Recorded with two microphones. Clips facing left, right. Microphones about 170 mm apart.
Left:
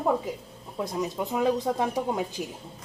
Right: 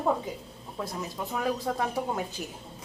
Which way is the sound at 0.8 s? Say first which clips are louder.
Left 5 dB; 20° left (ahead or behind).